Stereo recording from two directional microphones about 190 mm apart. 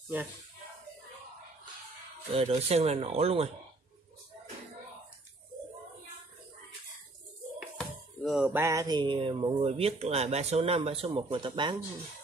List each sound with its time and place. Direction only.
0.1 s speech: 10° right (ahead or behind)
2.3 s speech: 30° right (ahead or behind)
7.6 s a sound: centre (ahead or behind)
8.5 s speech: 15° right (ahead or behind)